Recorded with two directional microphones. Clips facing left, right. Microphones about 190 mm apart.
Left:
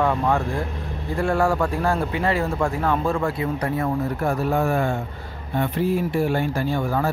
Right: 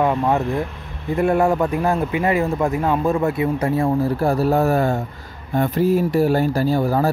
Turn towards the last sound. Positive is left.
turn(degrees=-35)  # may be behind; listen again after turning